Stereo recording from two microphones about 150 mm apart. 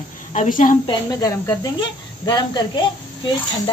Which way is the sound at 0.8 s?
25° left (ahead or behind).